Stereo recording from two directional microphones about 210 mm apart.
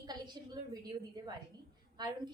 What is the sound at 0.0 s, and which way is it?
A woman's voice, 20° right (ahead or behind).